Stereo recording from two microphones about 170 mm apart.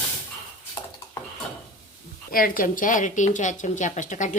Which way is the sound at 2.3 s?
55° left (ahead or behind).